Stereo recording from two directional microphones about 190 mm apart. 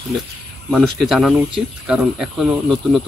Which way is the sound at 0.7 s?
Centre (ahead or behind).